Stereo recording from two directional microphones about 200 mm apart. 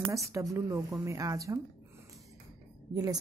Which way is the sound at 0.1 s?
15° right (ahead or behind).